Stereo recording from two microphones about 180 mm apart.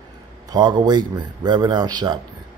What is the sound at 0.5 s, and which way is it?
A man's voice, 25° right (ahead or behind).